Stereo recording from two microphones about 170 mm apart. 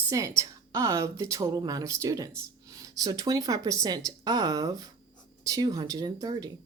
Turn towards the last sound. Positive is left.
turn(degrees=-20)  # may be behind; listen again after turning